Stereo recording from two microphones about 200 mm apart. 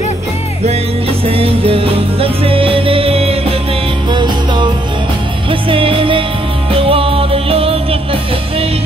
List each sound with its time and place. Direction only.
1.2 s music: 30° right (ahead or behind)